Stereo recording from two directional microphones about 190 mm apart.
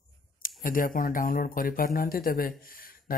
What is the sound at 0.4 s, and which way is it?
Speech, 50° left (ahead or behind).